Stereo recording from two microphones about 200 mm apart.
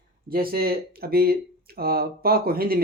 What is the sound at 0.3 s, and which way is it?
Speech, 50° right (ahead or behind).